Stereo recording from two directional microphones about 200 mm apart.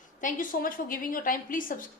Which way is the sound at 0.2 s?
40° left (ahead or behind).